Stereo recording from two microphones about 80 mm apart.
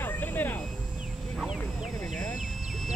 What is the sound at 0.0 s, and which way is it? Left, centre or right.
Vehicle, left.